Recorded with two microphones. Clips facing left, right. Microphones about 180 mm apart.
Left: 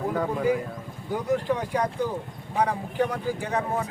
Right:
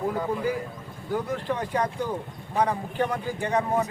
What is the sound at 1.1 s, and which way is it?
Speech, 10° left (ahead or behind).